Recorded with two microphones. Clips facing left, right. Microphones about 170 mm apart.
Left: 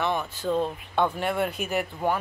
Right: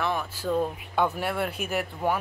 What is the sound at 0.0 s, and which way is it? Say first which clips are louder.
A woman's voice: left 1 dB; centre (ahead or behind).